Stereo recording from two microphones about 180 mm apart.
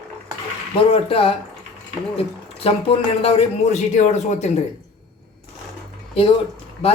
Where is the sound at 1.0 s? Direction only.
30° left (ahead or behind).